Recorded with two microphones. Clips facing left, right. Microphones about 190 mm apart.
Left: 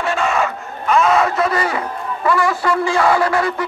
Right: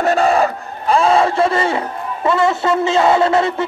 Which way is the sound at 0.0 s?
40° right (ahead or behind).